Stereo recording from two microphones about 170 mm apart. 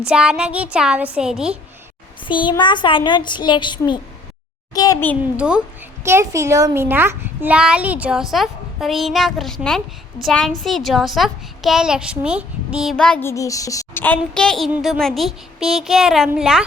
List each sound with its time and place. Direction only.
0.1 s a child's voice: 5° right (ahead or behind)
2.2 s a child's voice: 30° left (ahead or behind)
5.4 s a woman's voice: 5° right (ahead or behind)